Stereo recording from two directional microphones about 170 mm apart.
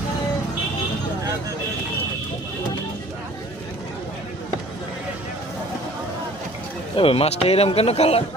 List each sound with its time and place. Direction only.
6.9 s speech: 35° left (ahead or behind)